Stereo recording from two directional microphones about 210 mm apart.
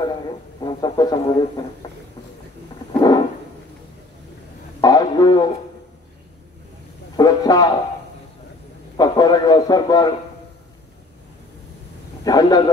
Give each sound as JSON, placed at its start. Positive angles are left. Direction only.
{"t": 0.6, "sound": "music", "side_deg": 20}
{"t": 2.9, "sound": "a sound", "side_deg": 20}
{"t": 4.8, "sound": "a sound", "side_deg": 20}
{"t": 7.2, "sound": "speech", "side_deg": 20}
{"t": 8.9, "sound": "a man's voice", "side_deg": 20}
{"t": 12.3, "sound": "speech", "side_deg": 20}